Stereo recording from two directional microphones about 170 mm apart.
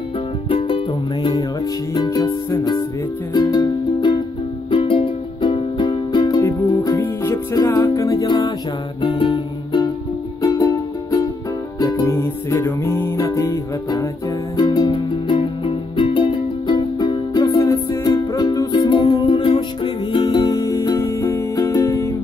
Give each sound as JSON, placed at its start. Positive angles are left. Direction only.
{"t": 0.5, "sound": "music", "side_deg": 30}
{"t": 2.0, "sound": "music", "side_deg": 20}